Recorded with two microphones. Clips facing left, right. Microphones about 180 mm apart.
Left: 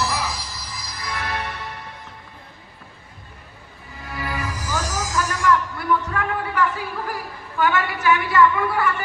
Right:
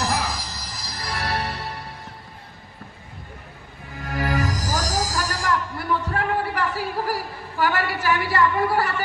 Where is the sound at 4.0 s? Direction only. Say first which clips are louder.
Right 5 dB; 45° right (ahead or behind).